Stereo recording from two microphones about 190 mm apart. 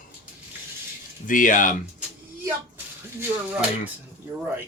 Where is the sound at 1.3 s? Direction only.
45° left (ahead or behind).